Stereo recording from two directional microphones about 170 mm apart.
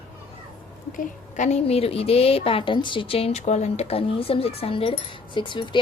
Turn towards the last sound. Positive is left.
turn(degrees=30)  # may be behind; listen again after turning